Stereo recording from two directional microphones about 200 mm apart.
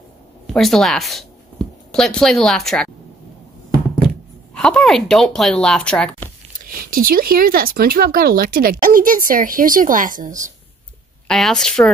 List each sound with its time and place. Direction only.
0.5 s speech: centre (ahead or behind)
4.6 s speech: 5° left (ahead or behind)
6.9 s speech: 45° right (ahead or behind)
11.2 s speech: centre (ahead or behind)